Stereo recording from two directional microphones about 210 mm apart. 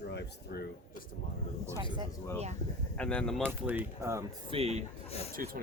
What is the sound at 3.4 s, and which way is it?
Speech, 10° right (ahead or behind).